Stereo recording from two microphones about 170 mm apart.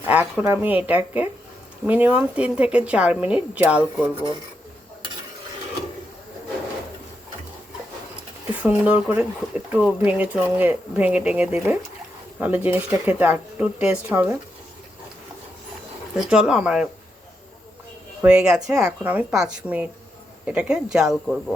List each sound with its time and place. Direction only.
0.1 s speech: 10° right (ahead or behind)
8.5 s speech: 10° right (ahead or behind)
16.1 s speech: 5° right (ahead or behind)
18.2 s speech: 5° right (ahead or behind)